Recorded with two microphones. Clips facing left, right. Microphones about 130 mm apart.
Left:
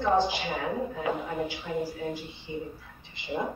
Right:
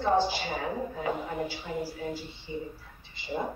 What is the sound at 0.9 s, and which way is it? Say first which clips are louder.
Music: left 1 dB; 35° right (ahead or behind).